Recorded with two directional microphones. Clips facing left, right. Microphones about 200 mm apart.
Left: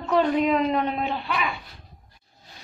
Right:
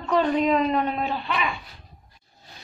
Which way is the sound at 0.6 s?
20° left (ahead or behind).